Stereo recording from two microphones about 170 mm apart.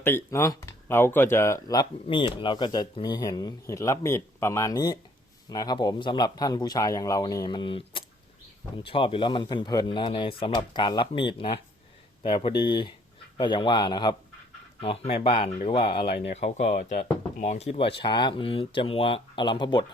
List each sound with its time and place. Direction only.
0.0 s speech: 15° left (ahead or behind); by 16.0 s 30° left (ahead or behind)
16.0 s speech: 75° left (ahead or behind)
16.3 s speech: 40° left (ahead or behind)
16.7 s speech: 60° left (ahead or behind)
17.4 s speech: 40° left (ahead or behind)